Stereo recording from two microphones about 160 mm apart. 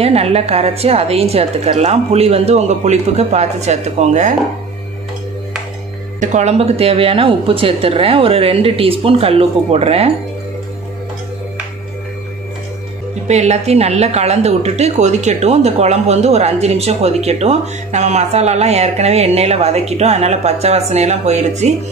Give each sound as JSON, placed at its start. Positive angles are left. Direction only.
{"t": 0.0, "sound": "a woman's voice", "side_deg": -40}
{"t": 6.1, "sound": "a woman's voice", "side_deg": -50}
{"t": 13.3, "sound": "a woman's voice", "side_deg": -45}